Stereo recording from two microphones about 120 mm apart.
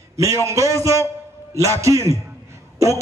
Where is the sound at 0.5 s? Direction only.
25° right (ahead or behind).